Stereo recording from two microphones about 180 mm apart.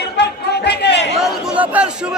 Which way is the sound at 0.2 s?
70° left (ahead or behind).